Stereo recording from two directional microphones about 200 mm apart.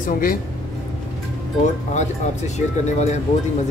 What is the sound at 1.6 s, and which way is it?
Speech, 35° left (ahead or behind).